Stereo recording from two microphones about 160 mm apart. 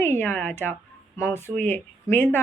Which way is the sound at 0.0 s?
15° left (ahead or behind).